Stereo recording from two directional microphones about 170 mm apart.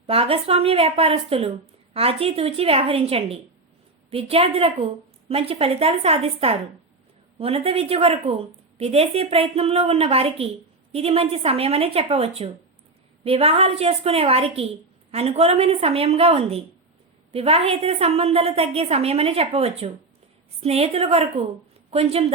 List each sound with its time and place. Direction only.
0.1 s a woman's voice: 35° right (ahead or behind)